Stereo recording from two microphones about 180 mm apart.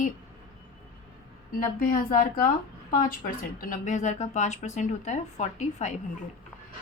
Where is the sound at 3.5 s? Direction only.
45° left (ahead or behind).